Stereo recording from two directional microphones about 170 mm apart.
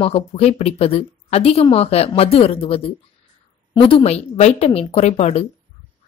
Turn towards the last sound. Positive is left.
turn(degrees=40)  # may be behind; listen again after turning